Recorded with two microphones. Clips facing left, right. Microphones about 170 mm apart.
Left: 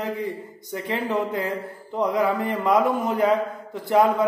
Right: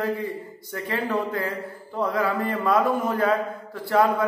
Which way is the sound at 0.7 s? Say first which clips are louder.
Left 1 dB; 20° left (ahead or behind).